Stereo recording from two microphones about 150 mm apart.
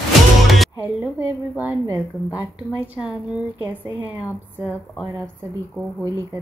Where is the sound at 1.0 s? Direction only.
15° right (ahead or behind).